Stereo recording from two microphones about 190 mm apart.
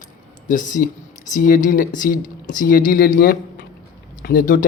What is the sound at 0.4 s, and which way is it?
Speech, 45° left (ahead or behind).